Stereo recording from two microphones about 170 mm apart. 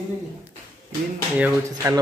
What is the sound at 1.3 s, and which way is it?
Speech, 10° right (ahead or behind).